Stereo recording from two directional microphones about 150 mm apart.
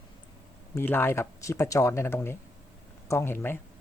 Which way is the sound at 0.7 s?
15° left (ahead or behind).